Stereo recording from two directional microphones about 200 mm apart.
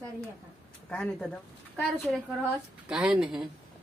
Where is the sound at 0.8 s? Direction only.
5° left (ahead or behind).